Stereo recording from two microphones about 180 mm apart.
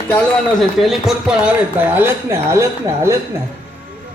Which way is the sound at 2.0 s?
15° right (ahead or behind).